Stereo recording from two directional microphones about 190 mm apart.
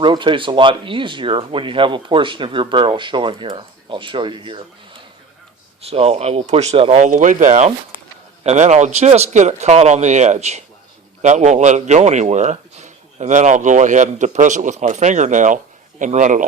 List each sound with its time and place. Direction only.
0.0 s speech: 25° right (ahead or behind)
5.8 s speech: 35° right (ahead or behind)